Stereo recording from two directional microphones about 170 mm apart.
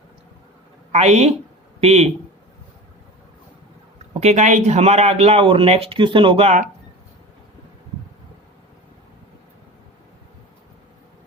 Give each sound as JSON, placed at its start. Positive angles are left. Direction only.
{"t": 0.9, "sound": "speech", "side_deg": -40}
{"t": 4.2, "sound": "speech", "side_deg": -45}